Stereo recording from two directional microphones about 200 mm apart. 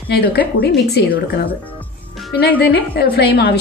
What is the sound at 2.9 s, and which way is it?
Speech, 50° left (ahead or behind).